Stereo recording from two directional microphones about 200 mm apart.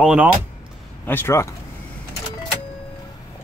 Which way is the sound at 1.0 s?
10° left (ahead or behind).